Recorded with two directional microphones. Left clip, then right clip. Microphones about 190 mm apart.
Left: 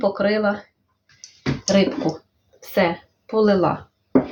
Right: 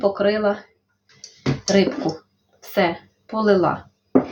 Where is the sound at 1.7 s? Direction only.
10° left (ahead or behind).